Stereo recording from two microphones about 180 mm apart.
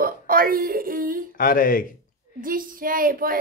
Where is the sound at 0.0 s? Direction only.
55° right (ahead or behind).